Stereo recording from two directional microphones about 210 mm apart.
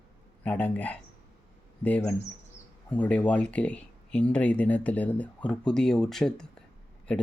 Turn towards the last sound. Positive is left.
turn(degrees=5)  # may be behind; listen again after turning